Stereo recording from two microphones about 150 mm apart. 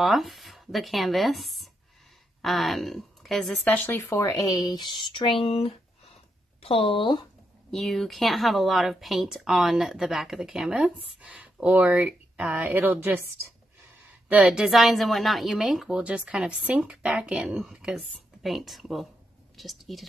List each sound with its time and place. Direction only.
0.0 s speech: centre (ahead or behind); by 7.2 s 35° left (ahead or behind)
7.7 s speech: centre (ahead or behind); by 13.3 s 15° right (ahead or behind)
14.3 s a woman's voice: 5° right (ahead or behind)